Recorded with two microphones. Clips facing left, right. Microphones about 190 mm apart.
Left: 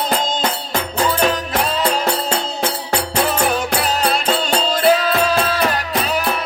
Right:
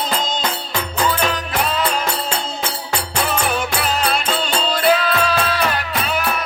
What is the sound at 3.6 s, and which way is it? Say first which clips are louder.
Music: left 2 dB; 40° left (ahead or behind).